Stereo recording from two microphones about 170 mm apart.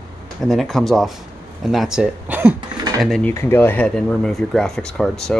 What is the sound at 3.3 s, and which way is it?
Speech, 15° left (ahead or behind).